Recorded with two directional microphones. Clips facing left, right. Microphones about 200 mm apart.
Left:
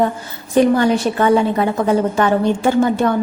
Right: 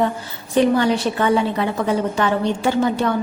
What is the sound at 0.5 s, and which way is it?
A woman's voice, 45° left (ahead or behind).